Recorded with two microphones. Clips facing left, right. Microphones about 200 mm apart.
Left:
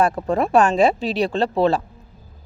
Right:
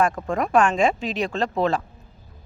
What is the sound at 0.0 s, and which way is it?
Speech, 30° left (ahead or behind).